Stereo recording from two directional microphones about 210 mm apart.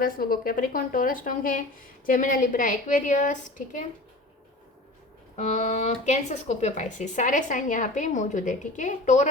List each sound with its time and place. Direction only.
0.0 s speech: 45° left (ahead or behind)
5.4 s speech: 35° left (ahead or behind)